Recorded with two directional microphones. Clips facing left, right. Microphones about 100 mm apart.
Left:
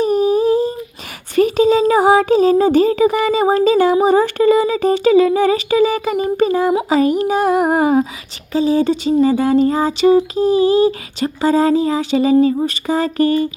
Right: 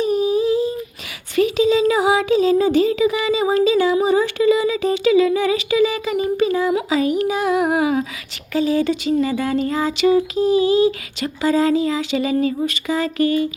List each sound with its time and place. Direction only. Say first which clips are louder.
0.0 s humming: left 4 dB; 45° left (ahead or behind)
1.4 s a sound: left 3 dB; 45° left (ahead or behind)
8.5 s speech: left 3 dB; 30° left (ahead or behind)